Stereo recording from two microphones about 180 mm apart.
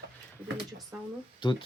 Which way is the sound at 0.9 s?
10° right (ahead or behind).